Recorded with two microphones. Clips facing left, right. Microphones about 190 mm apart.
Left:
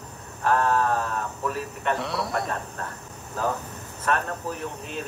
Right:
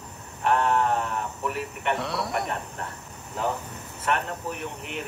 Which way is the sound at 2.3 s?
20° right (ahead or behind).